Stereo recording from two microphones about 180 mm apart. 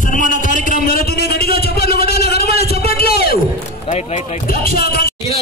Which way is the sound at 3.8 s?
40° left (ahead or behind).